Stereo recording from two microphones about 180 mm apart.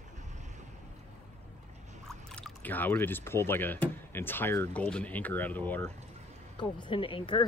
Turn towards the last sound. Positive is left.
turn(degrees=25)  # may be behind; listen again after turning